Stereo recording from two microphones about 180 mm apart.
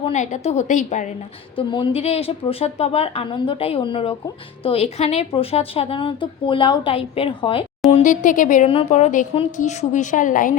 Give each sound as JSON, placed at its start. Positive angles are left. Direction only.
{"t": 0.0, "sound": "a woman's voice", "side_deg": 40}
{"t": 1.5, "sound": "a woman's voice", "side_deg": 30}
{"t": 8.0, "sound": "a woman's voice", "side_deg": 45}